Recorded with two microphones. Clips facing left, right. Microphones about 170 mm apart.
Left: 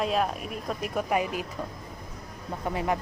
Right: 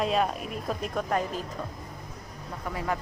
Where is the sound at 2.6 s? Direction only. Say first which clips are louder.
Left 3 dB; 20° left (ahead or behind).